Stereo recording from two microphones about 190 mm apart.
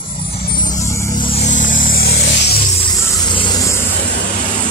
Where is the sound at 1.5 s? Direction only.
85° left.